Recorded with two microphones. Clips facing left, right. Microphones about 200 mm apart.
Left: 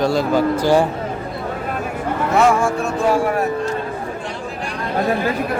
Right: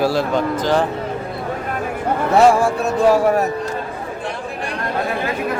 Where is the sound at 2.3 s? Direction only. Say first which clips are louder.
Right 3 dB; 35° right (ahead or behind).